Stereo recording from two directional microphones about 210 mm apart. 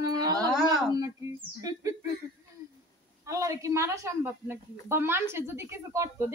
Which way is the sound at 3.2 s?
15° right (ahead or behind).